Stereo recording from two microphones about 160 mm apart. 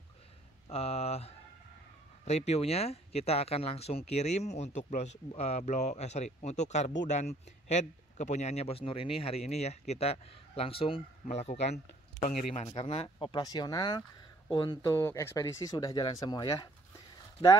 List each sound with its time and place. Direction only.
0.7 s speech: 40° left (ahead or behind)